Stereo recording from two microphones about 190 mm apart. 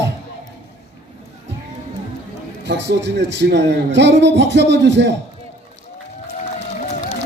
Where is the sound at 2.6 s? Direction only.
65° right (ahead or behind).